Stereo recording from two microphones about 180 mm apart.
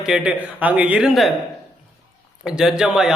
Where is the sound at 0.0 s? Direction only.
5° right (ahead or behind).